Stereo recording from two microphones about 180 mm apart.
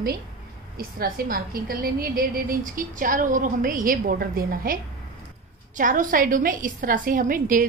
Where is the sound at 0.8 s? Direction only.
55° right (ahead or behind).